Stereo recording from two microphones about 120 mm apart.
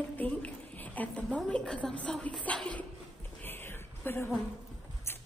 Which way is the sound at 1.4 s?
5° left (ahead or behind).